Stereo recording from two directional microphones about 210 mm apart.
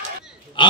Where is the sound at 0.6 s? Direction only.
25° left (ahead or behind).